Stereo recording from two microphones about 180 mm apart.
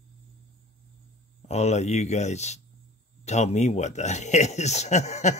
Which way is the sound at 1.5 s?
40° left (ahead or behind).